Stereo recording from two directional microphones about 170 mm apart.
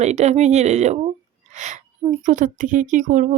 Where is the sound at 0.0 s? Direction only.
40° right (ahead or behind).